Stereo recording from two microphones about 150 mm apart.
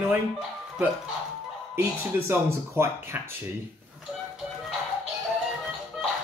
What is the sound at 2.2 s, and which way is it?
Speech, 15° right (ahead or behind).